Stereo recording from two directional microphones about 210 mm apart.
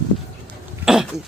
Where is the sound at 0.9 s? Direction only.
5° right (ahead or behind).